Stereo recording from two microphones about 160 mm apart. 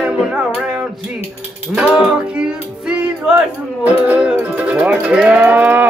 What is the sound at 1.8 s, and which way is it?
Music, 5° right (ahead or behind).